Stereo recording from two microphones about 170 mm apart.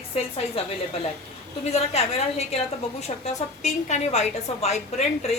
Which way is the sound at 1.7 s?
40° left (ahead or behind).